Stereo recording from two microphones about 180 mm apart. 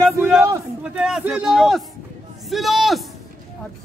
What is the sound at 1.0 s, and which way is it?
Speech, 5° right (ahead or behind).